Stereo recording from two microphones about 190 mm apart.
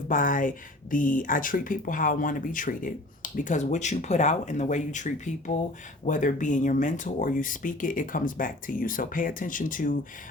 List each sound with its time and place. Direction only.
0.1 s speech: 45° left (ahead or behind)